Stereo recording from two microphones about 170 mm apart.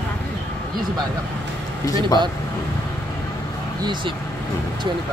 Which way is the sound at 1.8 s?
20° left (ahead or behind).